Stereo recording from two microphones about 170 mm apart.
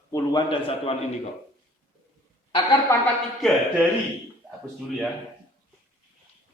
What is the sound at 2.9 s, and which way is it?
Speech, 15° left (ahead or behind).